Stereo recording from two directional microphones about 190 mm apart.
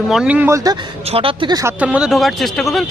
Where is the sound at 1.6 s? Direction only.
5° right (ahead or behind).